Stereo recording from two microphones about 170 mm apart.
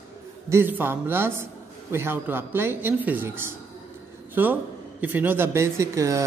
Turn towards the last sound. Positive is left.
turn(degrees=-20)  # may be behind; listen again after turning